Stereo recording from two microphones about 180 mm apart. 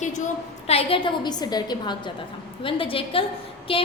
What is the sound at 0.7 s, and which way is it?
A woman's voice, 30° left (ahead or behind).